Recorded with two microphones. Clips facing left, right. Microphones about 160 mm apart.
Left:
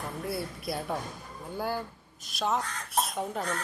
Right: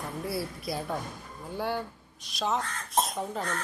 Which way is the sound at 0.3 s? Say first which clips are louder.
Right 1 dB; centre (ahead or behind).